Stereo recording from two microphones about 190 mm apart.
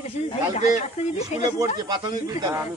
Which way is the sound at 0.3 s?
40° left (ahead or behind).